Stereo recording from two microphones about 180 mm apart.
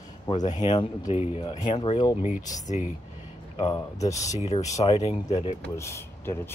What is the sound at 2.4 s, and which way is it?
Speech, 40° left (ahead or behind).